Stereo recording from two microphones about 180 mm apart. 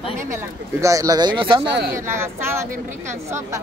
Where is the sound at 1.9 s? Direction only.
15° right (ahead or behind).